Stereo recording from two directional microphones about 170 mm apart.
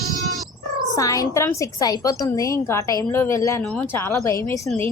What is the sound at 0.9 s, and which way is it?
A woman's voice, 20° left (ahead or behind).